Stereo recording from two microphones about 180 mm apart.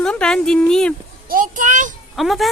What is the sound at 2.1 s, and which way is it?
Speech, centre (ahead or behind).